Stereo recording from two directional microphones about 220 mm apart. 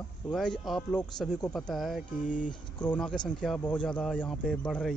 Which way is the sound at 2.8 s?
5° left (ahead or behind).